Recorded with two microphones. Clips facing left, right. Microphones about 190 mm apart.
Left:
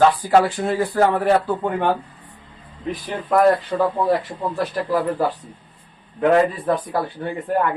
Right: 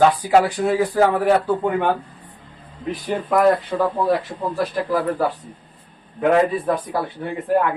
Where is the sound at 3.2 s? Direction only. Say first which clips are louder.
Left 1 dB; centre (ahead or behind).